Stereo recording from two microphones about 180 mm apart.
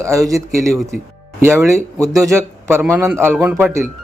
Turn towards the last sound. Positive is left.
turn(degrees=-15)  # may be behind; listen again after turning